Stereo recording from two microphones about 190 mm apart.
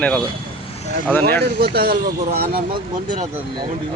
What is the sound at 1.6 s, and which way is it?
Speech, 55° right (ahead or behind).